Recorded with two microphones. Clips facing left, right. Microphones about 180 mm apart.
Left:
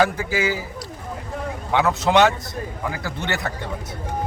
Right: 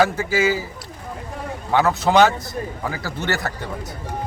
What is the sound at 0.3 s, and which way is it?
Speech, 15° left (ahead or behind).